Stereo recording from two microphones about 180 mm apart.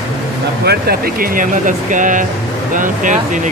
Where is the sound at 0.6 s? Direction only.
60° right (ahead or behind).